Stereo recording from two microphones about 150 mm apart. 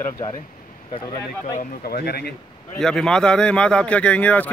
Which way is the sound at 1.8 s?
90° left.